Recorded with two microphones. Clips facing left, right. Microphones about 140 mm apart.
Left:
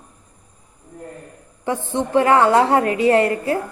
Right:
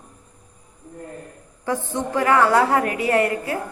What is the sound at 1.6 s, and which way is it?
A woman's voice, 20° left (ahead or behind).